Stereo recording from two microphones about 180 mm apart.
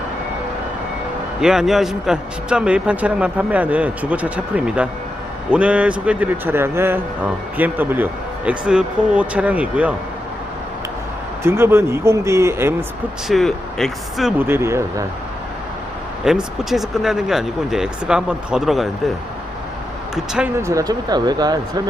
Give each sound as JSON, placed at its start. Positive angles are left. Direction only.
{"t": 1.4, "sound": "a man's voice", "side_deg": -5}
{"t": 11.4, "sound": "a man's voice", "side_deg": -15}
{"t": 13.2, "sound": "speech", "side_deg": 0}
{"t": 14.4, "sound": "a man's voice", "side_deg": -15}
{"t": 16.2, "sound": "speech", "side_deg": -5}
{"t": 20.1, "sound": "speech", "side_deg": -5}
{"t": 20.6, "sound": "speech", "side_deg": -15}